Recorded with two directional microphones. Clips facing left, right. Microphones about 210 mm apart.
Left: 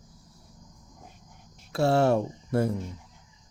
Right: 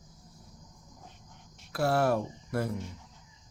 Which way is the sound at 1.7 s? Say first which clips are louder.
Left 4 dB; 25° left (ahead or behind).